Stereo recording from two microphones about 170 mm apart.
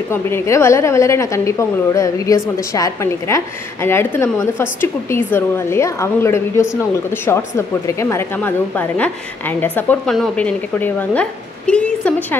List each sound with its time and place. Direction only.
0.1 s speech: 15° left (ahead or behind)